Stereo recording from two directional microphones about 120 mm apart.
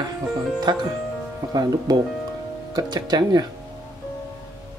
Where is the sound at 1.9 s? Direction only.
35° right (ahead or behind).